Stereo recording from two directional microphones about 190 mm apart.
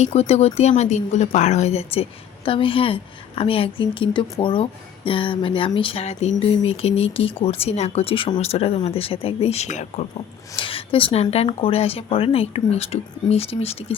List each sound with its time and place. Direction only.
0.0 s speech: 35° left (ahead or behind)